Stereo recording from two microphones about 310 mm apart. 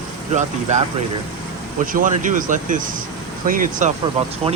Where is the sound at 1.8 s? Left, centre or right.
Right.